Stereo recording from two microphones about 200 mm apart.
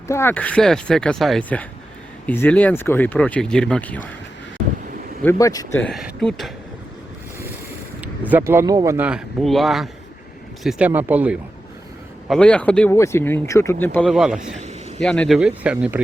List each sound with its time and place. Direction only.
0.1 s speech: 10° left (ahead or behind)
5.2 s speech: 15° left (ahead or behind)
5.9 s speech: centre (ahead or behind)
8.0 s speech: 10° right (ahead or behind)
12.3 s speech: 5° left (ahead or behind)
14.1 s speech: 5° right (ahead or behind)